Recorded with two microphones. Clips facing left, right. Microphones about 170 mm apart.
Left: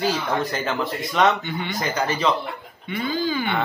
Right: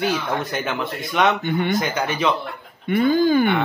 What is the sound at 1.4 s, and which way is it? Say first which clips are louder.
Speech: right 8 dB; 50° right (ahead or behind).